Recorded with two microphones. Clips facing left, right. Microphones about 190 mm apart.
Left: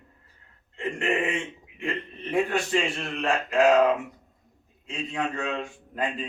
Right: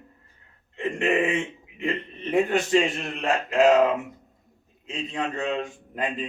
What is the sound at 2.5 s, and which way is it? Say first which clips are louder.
Speech: right 4 dB; 20° right (ahead or behind).